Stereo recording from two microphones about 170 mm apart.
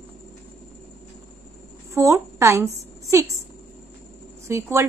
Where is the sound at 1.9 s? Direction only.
15° right (ahead or behind).